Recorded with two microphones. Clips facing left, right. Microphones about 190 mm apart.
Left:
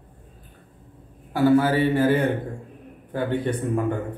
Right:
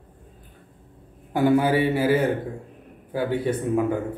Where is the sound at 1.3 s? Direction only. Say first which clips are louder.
Left 1 dB; 20° right (ahead or behind).